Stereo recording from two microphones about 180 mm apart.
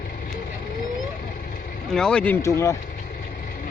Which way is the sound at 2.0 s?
5° left (ahead or behind).